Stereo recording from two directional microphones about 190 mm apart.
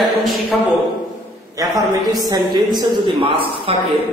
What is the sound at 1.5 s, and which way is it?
A man's voice, 15° right (ahead or behind).